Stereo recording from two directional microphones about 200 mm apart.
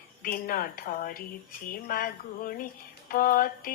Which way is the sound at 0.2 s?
45° left (ahead or behind).